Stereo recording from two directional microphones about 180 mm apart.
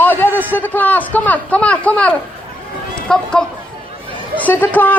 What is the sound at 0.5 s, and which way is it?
A man's voice, 10° left (ahead or behind).